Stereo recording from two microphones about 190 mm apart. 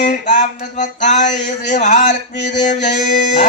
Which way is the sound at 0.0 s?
40° left (ahead or behind).